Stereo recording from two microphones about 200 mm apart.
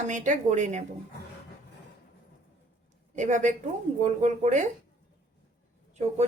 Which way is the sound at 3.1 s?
40° right (ahead or behind).